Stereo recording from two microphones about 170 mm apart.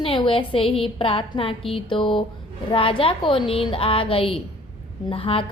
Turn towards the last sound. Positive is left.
turn(degrees=30)  # may be behind; listen again after turning